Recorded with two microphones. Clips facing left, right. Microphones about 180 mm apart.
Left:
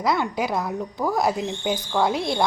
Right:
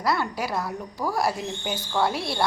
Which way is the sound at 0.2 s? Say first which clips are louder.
Left 3 dB; 20° left (ahead or behind).